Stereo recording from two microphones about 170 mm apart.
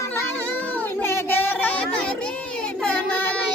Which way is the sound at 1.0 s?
15° left (ahead or behind).